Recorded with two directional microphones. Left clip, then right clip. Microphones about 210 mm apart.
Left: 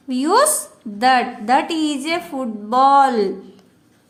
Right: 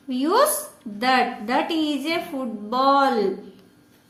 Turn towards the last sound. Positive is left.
turn(degrees=60)  # may be behind; listen again after turning